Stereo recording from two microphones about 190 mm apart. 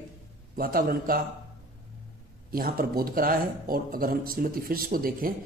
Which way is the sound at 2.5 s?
50° right (ahead or behind).